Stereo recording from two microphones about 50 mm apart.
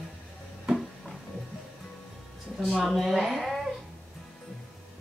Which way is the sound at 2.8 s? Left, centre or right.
Centre.